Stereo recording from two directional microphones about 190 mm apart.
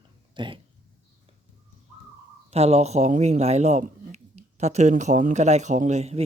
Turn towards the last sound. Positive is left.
turn(degrees=-35)  # may be behind; listen again after turning